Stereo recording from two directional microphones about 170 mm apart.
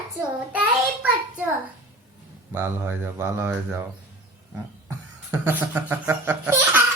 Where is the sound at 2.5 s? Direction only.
15° right (ahead or behind).